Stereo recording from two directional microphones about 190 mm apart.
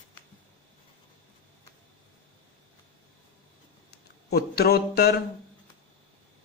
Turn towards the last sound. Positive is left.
turn(degrees=55)  # may be behind; listen again after turning